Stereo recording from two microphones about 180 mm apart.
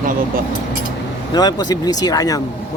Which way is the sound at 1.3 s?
20° left (ahead or behind).